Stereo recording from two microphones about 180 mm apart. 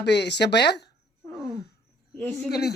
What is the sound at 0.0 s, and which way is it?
Speech, 70° left (ahead or behind).